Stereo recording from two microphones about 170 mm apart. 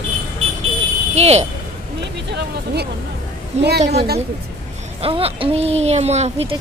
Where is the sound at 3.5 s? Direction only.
40° right (ahead or behind).